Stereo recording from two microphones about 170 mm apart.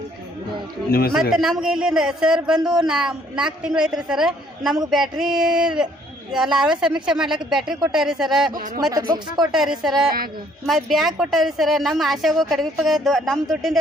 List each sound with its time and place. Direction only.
0.9 s speech: 60° left (ahead or behind)
1.1 s a man's voice: centre (ahead or behind)
8.5 s speech: 55° right (ahead or behind)
8.9 s speech: 25° right (ahead or behind)
9.4 s a man's voice: centre (ahead or behind)